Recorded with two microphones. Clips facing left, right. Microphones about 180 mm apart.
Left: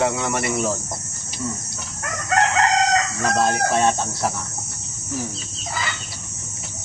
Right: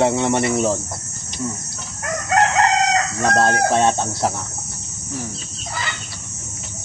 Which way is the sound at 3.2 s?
25° right (ahead or behind).